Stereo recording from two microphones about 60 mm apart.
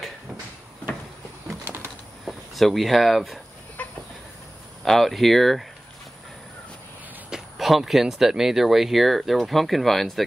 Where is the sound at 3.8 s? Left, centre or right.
Left.